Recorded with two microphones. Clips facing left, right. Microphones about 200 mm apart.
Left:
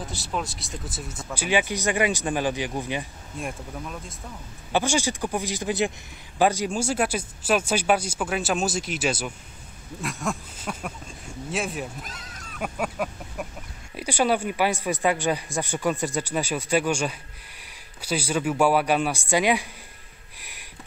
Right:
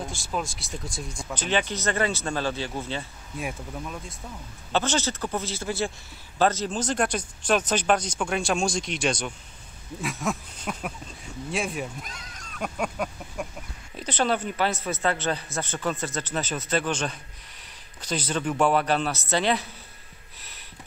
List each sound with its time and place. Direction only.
0.3 s speech: centre (ahead or behind)
3.3 s speech: centre (ahead or behind)
4.7 s speech: 10° left (ahead or behind)
10.0 s a sound: centre (ahead or behind)
11.5 s speech: centre (ahead or behind)
20.3 s a sound: 10° left (ahead or behind)